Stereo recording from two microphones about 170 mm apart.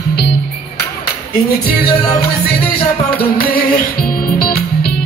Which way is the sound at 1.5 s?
60° left (ahead or behind).